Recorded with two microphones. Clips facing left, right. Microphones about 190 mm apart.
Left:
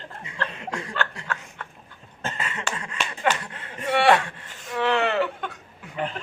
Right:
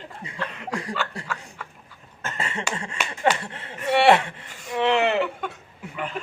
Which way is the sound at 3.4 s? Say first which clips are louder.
Right 1 dB; 25° right (ahead or behind).